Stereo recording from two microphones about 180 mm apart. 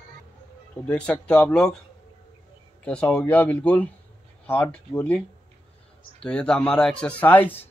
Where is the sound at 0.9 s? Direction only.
10° left (ahead or behind).